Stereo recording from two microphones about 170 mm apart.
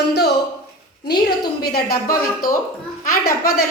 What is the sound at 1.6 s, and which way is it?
A woman's voice, 65° left (ahead or behind).